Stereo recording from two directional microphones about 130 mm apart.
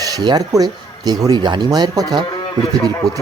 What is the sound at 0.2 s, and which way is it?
Speech, 30° right (ahead or behind).